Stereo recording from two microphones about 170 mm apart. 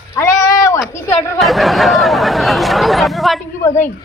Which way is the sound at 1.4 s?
Centre (ahead or behind).